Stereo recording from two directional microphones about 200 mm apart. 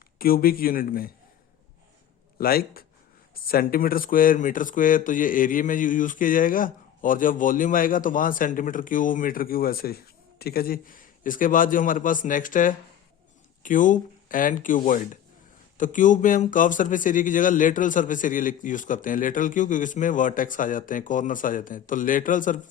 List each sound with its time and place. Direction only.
0.2 s speech: 45° left (ahead or behind)
2.4 s speech: 50° left (ahead or behind)